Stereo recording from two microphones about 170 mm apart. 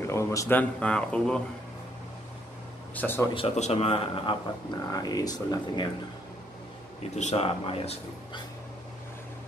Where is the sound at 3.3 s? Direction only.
40° left (ahead or behind).